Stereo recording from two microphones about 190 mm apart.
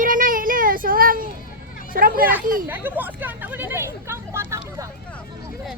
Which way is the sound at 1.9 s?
50° right (ahead or behind).